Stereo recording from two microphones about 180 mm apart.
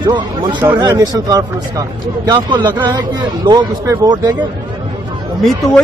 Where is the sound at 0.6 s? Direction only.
10° right (ahead or behind).